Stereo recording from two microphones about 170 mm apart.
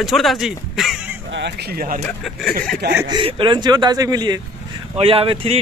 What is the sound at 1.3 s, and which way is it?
Speech, 80° right.